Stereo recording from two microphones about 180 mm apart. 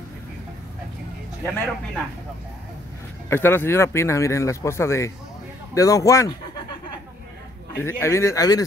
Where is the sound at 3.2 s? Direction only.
10° left (ahead or behind).